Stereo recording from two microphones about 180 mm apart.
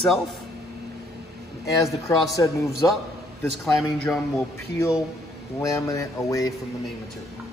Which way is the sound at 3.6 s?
5° left (ahead or behind).